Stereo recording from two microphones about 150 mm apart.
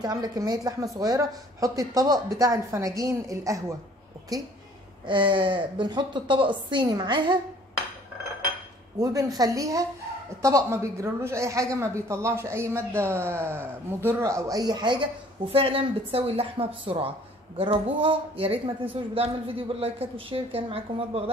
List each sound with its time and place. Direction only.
0.0 s speech: 25° right (ahead or behind)
8.9 s speech: 25° right (ahead or behind); by 21.2 s 40° right (ahead or behind)